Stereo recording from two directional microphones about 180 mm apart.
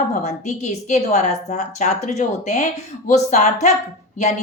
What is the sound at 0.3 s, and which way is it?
A woman's voice, 40° left (ahead or behind).